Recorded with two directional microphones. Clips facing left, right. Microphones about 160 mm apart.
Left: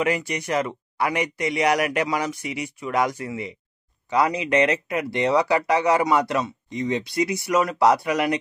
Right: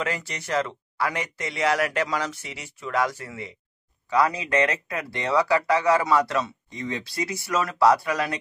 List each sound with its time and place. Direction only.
0.0 s speech: 15° left (ahead or behind)